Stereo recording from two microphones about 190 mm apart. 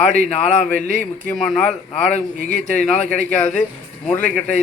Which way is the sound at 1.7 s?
40° left (ahead or behind).